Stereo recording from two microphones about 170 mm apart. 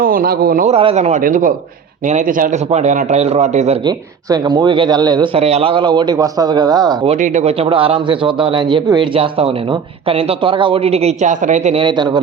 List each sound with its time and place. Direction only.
0.0 s speech: 55° right (ahead or behind)
0.7 s a man's voice: 35° right (ahead or behind)
3.8 s a man's voice: 25° right (ahead or behind)
7.1 s a man's voice: 40° right (ahead or behind)
11.8 s a man's voice: 25° right (ahead or behind)